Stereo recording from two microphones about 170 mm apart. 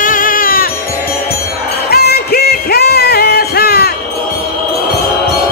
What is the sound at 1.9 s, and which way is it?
Music, 70° left (ahead or behind).